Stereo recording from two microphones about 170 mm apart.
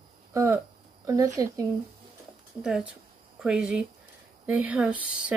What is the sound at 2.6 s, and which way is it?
Speech, 5° right (ahead or behind).